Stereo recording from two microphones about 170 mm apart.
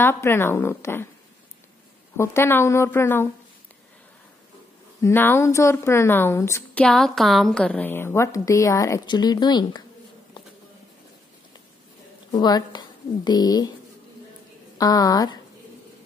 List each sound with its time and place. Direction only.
0.0 s a woman's voice: 15° left (ahead or behind)
2.1 s a woman's voice: 15° left (ahead or behind)
5.0 s a woman's voice: 15° left (ahead or behind)
12.3 s speech: 25° left (ahead or behind)
14.8 s speech: 20° left (ahead or behind)